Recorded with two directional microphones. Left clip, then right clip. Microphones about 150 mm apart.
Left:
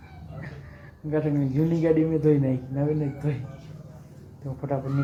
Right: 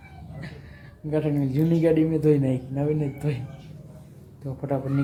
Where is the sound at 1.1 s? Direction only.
20° right (ahead or behind).